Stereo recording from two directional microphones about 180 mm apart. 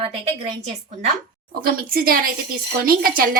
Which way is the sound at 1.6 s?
55° right (ahead or behind).